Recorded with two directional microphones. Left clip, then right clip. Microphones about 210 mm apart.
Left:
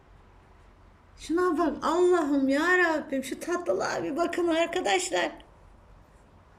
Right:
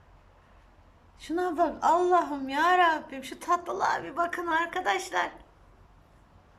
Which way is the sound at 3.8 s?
45° right (ahead or behind).